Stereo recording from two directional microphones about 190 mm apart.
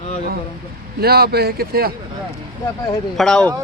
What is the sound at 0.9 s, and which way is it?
Speech, 55° right (ahead or behind).